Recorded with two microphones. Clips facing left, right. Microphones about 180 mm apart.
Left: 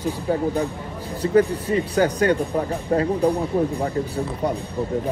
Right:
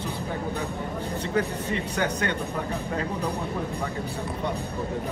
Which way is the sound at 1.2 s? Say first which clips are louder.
Left 10 dB; 35° left (ahead or behind).